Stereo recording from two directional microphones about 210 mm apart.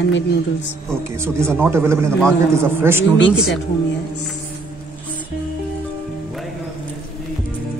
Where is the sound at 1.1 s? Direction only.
10° right (ahead or behind).